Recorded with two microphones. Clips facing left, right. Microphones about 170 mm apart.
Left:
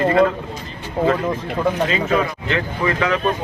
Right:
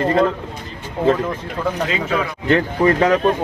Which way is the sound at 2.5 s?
40° right (ahead or behind).